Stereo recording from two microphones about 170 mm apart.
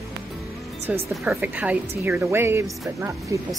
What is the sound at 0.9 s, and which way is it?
A woman's voice, 10° right (ahead or behind).